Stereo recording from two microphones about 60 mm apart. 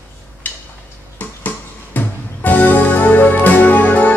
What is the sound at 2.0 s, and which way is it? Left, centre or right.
Music, left.